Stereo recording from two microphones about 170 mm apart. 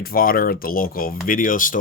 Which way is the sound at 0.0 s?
60° left (ahead or behind).